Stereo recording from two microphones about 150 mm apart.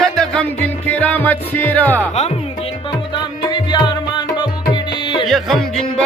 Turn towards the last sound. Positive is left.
turn(degrees=0)  # may be behind; listen again after turning